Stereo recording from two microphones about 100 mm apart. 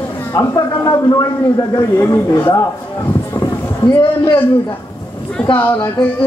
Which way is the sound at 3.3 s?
40° left (ahead or behind).